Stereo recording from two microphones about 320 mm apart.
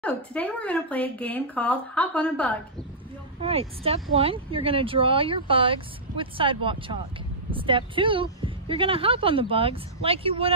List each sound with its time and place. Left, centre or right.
0.0 s speech: centre
3.3 s speech: centre